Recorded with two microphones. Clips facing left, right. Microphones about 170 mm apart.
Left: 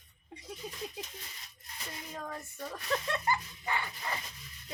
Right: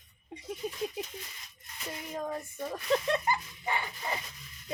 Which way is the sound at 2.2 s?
20° right (ahead or behind).